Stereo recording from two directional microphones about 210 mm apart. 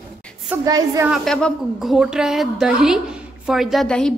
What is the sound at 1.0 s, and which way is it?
A woman's voice, centre (ahead or behind).